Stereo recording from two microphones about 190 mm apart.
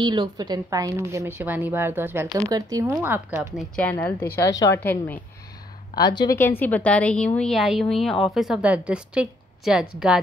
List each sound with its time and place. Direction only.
0.0 s a woman's voice: 25° right (ahead or behind); by 5.2 s 10° left (ahead or behind)
5.9 s a woman's voice: 20° left (ahead or behind); by 10.1 s 5° right (ahead or behind)